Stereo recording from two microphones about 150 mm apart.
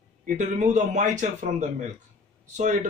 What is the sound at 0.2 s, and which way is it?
A man's voice, 55° right (ahead or behind).